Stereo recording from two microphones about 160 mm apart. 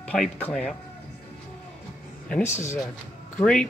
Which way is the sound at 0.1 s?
5° left (ahead or behind).